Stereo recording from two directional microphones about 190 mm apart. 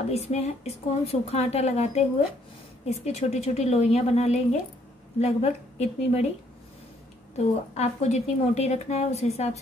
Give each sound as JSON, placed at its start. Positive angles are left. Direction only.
{"t": 0.1, "sound": "a woman's voice", "side_deg": 35}
{"t": 7.3, "sound": "a woman's voice", "side_deg": 35}